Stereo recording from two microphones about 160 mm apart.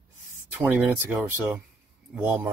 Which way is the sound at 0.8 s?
10° right (ahead or behind).